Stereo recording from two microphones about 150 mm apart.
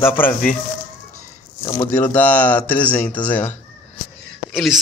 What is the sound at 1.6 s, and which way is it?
Speech, 25° left (ahead or behind).